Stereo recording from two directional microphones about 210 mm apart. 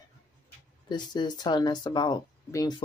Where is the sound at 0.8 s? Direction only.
20° left (ahead or behind).